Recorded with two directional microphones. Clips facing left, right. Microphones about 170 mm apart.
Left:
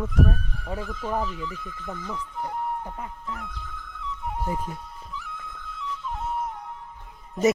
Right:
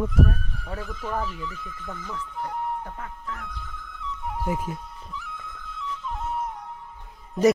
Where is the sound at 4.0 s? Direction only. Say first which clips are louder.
Even; 5° right (ahead or behind).